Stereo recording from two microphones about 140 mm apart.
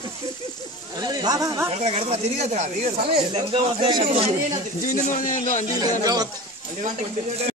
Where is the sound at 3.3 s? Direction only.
35° right (ahead or behind).